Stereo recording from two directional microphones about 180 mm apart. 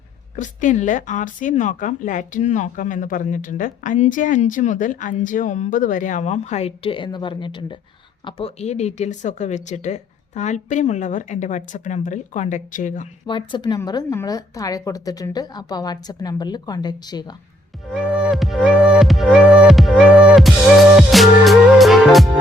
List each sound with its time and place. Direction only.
0.3 s speech: 45° left (ahead or behind)
13.2 s a woman's voice: 25° left (ahead or behind)
17.9 s music: 5° right (ahead or behind)